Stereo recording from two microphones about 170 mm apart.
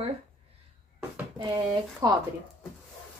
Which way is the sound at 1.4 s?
25° right (ahead or behind).